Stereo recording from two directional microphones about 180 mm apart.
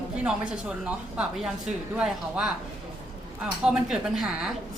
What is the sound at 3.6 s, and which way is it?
Speech, 5° right (ahead or behind).